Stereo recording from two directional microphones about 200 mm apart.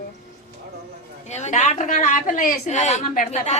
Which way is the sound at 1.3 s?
35° left (ahead or behind).